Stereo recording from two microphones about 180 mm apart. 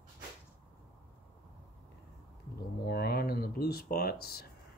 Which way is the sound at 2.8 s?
60° left (ahead or behind).